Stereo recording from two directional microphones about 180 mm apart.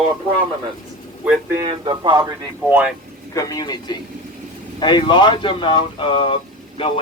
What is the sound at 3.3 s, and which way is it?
A man's voice, 20° left (ahead or behind).